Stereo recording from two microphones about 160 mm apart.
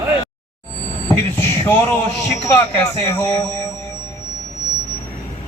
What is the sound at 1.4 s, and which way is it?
A man's voice, 10° left (ahead or behind).